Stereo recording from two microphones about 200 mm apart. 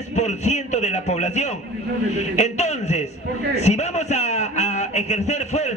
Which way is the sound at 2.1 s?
35° left (ahead or behind).